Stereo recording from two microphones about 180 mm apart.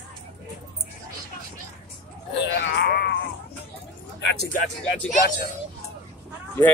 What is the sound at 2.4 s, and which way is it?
Wail, 60° left (ahead or behind).